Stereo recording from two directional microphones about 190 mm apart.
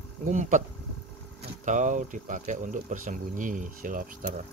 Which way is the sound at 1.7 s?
40° right (ahead or behind).